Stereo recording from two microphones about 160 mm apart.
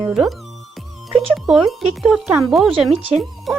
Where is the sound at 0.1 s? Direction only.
Centre (ahead or behind).